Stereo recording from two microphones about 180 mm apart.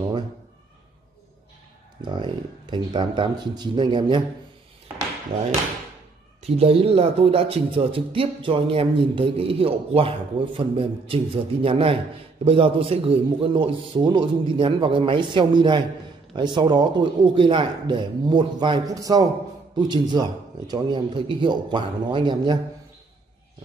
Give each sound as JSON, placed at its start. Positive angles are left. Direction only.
{"t": 2.0, "sound": "a man's voice", "side_deg": -25}
{"t": 6.4, "sound": "a man's voice", "side_deg": -30}